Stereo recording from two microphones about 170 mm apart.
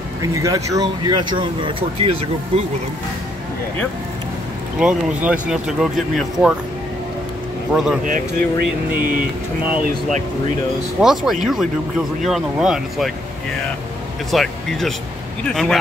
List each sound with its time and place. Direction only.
0.2 s speech: 20° right (ahead or behind)
4.7 s speech: 5° right (ahead or behind)
7.7 s speech: 5° right (ahead or behind)
8.0 s speech: 55° right (ahead or behind)
11.0 s speech: 5° right (ahead or behind)
14.3 s speech: centre (ahead or behind)